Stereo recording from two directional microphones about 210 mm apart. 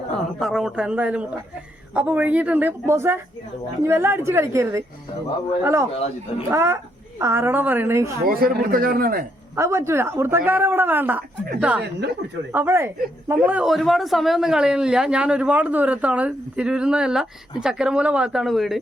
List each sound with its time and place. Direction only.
0.3 s a man's voice: centre (ahead or behind)
8.2 s a man's voice: 45° right (ahead or behind)
9.6 s speech: 15° right (ahead or behind)
12.5 s a man's voice: 10° right (ahead or behind)